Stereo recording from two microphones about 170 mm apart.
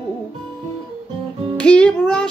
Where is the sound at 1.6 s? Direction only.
5° left (ahead or behind).